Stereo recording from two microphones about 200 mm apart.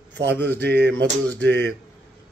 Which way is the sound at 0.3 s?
10° left (ahead or behind).